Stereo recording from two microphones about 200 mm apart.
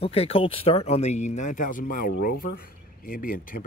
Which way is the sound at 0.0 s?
30° left (ahead or behind).